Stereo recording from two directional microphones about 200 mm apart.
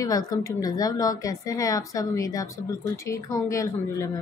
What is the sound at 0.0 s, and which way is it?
A woman's voice, 20° left (ahead or behind).